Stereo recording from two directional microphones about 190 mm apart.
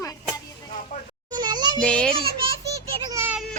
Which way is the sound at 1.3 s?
20° right (ahead or behind).